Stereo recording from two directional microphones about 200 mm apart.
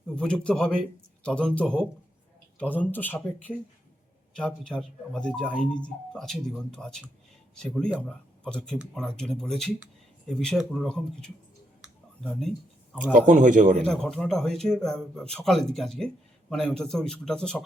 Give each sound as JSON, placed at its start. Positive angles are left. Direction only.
{"t": 0.2, "sound": "speech", "side_deg": 5}
{"t": 11.8, "sound": "clicking", "side_deg": 5}
{"t": 13.1, "sound": "speech", "side_deg": -40}
{"t": 13.7, "sound": "speech", "side_deg": 5}